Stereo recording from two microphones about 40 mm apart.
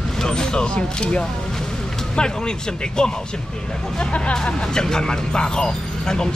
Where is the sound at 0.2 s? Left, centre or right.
Centre.